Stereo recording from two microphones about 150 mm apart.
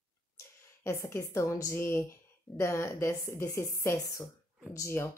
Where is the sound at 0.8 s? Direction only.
20° left (ahead or behind).